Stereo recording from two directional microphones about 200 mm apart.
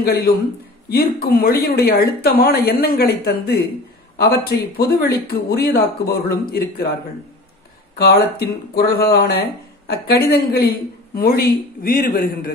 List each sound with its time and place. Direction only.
0.0 s speech: 50° left (ahead or behind)
8.0 s speech: 55° left (ahead or behind)